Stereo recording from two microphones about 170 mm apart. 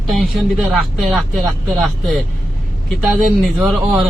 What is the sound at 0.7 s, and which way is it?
Speech, centre (ahead or behind).